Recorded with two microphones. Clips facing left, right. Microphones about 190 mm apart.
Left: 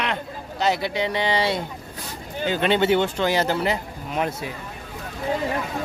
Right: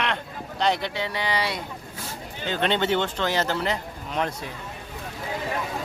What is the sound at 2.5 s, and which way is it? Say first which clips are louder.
Speech: left 4 dB; 10° left (ahead or behind).